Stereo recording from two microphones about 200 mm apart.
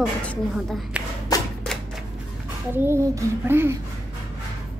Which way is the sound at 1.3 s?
20° left (ahead or behind).